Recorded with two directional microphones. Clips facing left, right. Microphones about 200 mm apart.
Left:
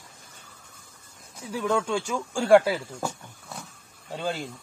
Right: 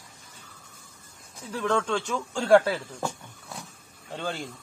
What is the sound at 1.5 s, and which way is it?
Speech, 10° left (ahead or behind).